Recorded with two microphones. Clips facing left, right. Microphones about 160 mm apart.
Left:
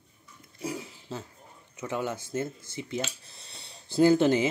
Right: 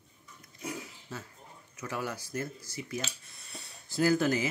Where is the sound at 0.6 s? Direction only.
30° left (ahead or behind).